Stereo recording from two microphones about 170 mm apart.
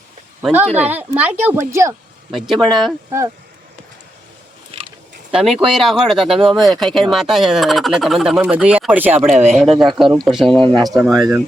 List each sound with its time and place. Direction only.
0.8 s a child's voice: 10° right (ahead or behind)
2.3 s speech: centre (ahead or behind)
3.1 s a child's voice: 15° right (ahead or behind)
4.7 s a sound: 35° right (ahead or behind)
5.3 s a child's voice: 5° right (ahead or behind)